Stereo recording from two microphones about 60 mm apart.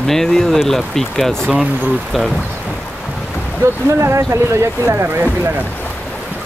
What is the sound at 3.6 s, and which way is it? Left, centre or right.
Speech, right.